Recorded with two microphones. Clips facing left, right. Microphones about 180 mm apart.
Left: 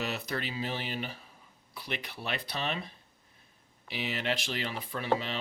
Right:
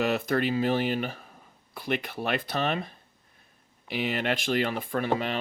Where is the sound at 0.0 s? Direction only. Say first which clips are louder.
Right 9 dB; 50° right (ahead or behind).